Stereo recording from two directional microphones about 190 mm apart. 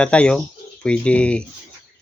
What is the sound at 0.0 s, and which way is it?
Speech, 5° left (ahead or behind).